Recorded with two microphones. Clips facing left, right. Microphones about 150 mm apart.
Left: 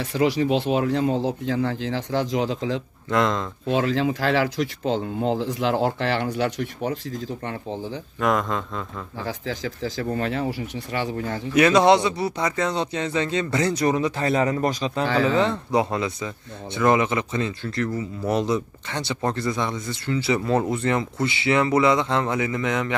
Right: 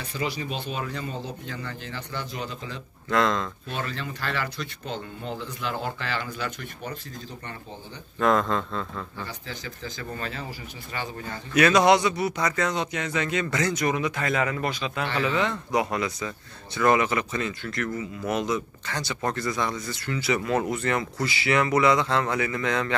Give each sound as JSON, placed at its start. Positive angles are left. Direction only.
{"t": 0.0, "sound": "speech", "side_deg": 90}
{"t": 3.1, "sound": "speech", "side_deg": 20}
{"t": 3.6, "sound": "speech", "side_deg": 90}
{"t": 8.2, "sound": "speech", "side_deg": 10}
{"t": 9.2, "sound": "speech", "side_deg": 90}
{"t": 11.5, "sound": "speech", "side_deg": 25}